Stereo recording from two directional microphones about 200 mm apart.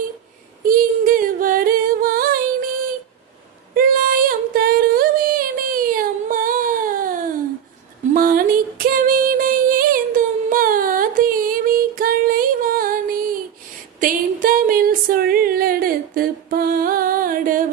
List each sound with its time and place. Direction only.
0.6 s singing: 45° right (ahead or behind)
3.8 s female singing: 45° right (ahead or behind)
10.5 s music: 45° right (ahead or behind)
14.0 s a sound: 45° right (ahead or behind)